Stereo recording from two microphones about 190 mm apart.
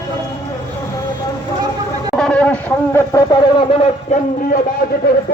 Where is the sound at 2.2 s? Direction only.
5° left (ahead or behind).